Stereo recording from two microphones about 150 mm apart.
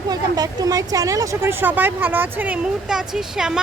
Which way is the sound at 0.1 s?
25° right (ahead or behind).